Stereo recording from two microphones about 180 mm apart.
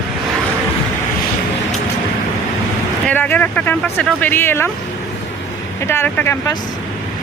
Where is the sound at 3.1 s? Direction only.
10° left (ahead or behind).